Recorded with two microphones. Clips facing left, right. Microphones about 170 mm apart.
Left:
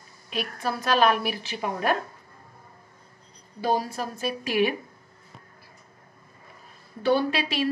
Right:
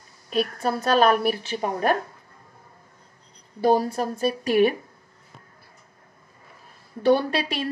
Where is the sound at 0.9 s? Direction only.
40° right (ahead or behind).